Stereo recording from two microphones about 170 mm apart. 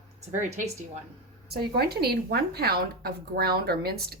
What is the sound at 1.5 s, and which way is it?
Speech, 65° right (ahead or behind).